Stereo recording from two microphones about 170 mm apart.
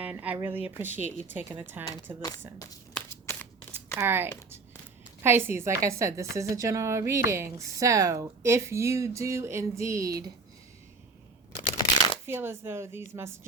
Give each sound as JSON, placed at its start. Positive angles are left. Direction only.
{"t": 0.0, "sound": "a woman's voice", "side_deg": -10}
{"t": 2.9, "sound": "a sound", "side_deg": 15}
{"t": 3.9, "sound": "a woman's voice", "side_deg": -15}
{"t": 11.8, "sound": "shuffling cards", "side_deg": 30}
{"t": 12.2, "sound": "a woman's voice", "side_deg": -15}